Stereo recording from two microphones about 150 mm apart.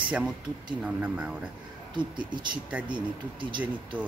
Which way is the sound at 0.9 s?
10° right (ahead or behind).